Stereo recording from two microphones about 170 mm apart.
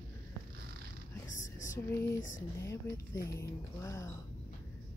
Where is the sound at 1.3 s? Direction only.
50° left (ahead or behind).